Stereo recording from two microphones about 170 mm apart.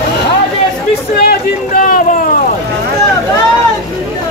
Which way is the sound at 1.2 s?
60° left (ahead or behind).